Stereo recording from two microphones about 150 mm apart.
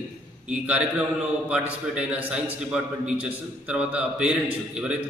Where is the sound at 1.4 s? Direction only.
5° right (ahead or behind).